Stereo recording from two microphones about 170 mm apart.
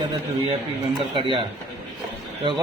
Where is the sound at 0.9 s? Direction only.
30° right (ahead or behind).